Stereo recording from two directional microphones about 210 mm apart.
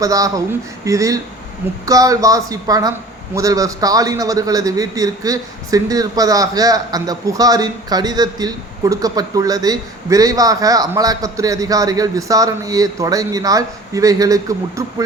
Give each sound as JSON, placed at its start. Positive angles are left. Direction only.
{"t": 0.0, "sound": "a man's voice", "side_deg": -15}